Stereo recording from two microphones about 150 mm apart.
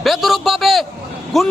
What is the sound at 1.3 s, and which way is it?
Speech, centre (ahead or behind).